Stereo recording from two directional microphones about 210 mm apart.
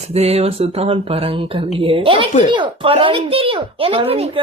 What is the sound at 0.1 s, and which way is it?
Speech, 30° right (ahead or behind).